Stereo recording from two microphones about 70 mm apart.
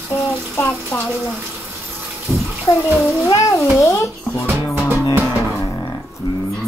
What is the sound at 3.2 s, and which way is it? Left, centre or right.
A child's voice, left.